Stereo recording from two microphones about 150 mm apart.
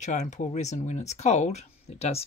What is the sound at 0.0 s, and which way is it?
Speech, 55° left (ahead or behind).